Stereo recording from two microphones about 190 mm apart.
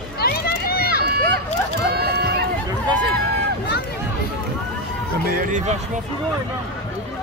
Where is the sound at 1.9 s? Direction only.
55° right (ahead or behind).